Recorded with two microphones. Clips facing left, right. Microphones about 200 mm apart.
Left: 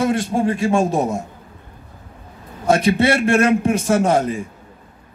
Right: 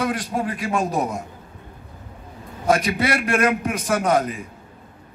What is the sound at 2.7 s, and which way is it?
A man's voice, 25° left (ahead or behind).